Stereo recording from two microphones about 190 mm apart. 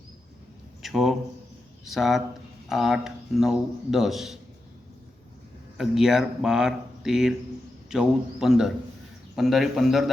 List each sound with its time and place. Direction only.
0.8 s a man's voice: centre (ahead or behind)
5.7 s a man's voice: centre (ahead or behind)